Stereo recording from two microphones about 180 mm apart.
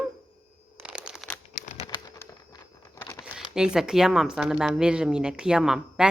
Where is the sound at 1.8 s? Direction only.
25° left (ahead or behind).